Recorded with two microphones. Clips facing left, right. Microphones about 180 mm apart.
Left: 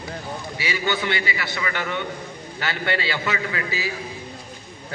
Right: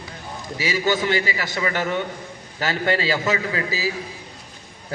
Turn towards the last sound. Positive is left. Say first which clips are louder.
# right 3 dB
turn(degrees=-35)  # may be behind; listen again after turning